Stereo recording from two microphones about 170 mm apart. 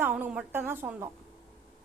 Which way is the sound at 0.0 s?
10° right (ahead or behind).